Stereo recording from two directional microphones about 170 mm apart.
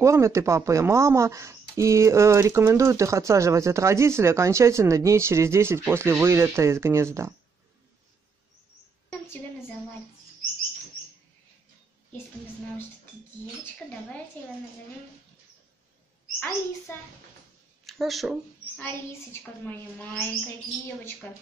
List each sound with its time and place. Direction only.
0.0 s a woman's voice: 15° right (ahead or behind)
14.4 s a woman's voice: 10° left (ahead or behind)
16.9 s a woman's voice: 15° left (ahead or behind)
17.8 s speech: centre (ahead or behind)
19.6 s a woman's voice: 10° left (ahead or behind)